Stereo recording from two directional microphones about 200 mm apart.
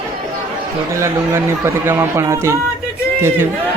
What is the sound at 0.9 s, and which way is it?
A man's voice, 15° right (ahead or behind).